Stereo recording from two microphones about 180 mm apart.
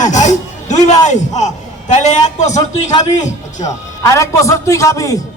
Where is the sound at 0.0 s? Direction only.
40° left (ahead or behind).